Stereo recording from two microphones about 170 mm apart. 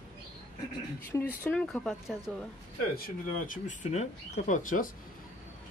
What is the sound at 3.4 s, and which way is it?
Speech, 45° left (ahead or behind).